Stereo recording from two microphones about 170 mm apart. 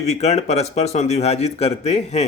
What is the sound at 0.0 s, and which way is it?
A man's voice, 40° left (ahead or behind).